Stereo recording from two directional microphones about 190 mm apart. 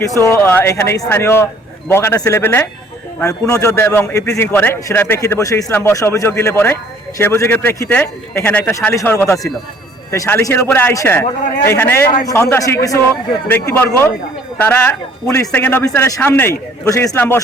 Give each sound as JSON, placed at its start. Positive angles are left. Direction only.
{"t": 0.2, "sound": "a man's voice", "side_deg": 15}